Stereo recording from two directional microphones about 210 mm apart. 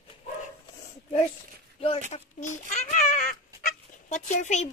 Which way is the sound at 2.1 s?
35° left (ahead or behind).